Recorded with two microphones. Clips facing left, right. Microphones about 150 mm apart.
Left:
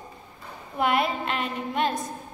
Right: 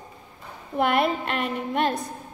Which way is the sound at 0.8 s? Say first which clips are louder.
Right 2 dB; 55° right (ahead or behind).